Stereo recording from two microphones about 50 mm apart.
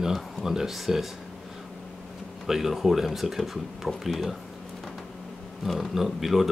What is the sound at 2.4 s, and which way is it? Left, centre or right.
Speech, centre.